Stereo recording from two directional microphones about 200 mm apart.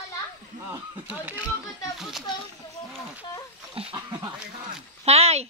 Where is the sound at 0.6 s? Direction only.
10° right (ahead or behind).